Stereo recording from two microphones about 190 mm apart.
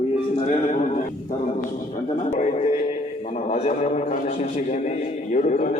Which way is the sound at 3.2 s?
35° left (ahead or behind).